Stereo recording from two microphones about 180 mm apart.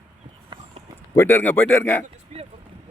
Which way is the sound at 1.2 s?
10° left (ahead or behind).